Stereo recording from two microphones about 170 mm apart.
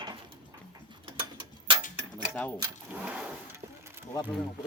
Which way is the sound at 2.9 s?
10° right (ahead or behind).